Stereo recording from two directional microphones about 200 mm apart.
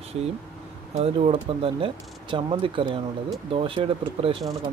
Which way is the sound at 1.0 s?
30° right (ahead or behind).